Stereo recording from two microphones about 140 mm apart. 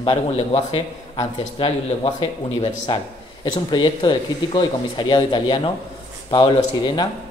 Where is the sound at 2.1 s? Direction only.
50° left (ahead or behind).